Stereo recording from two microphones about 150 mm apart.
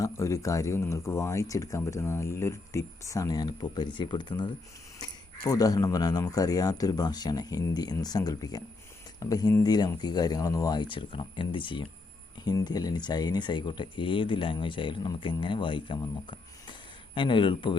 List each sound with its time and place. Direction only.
0.0 s speech: 20° left (ahead or behind)